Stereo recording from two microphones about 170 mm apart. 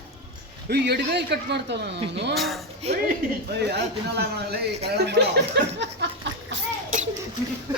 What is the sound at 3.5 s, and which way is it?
Speech, 75° right (ahead or behind).